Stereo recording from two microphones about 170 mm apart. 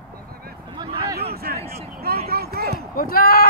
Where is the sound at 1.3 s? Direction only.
65° right (ahead or behind).